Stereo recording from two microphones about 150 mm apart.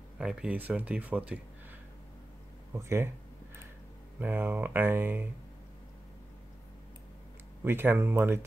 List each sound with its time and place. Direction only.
0.2 s speech: 5° right (ahead or behind)
2.7 s speech: 20° right (ahead or behind)
4.2 s speech: 15° right (ahead or behind)
7.6 s speech: 15° right (ahead or behind)